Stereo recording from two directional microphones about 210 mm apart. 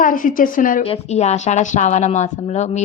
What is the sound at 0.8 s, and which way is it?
A woman's voice, 30° left (ahead or behind).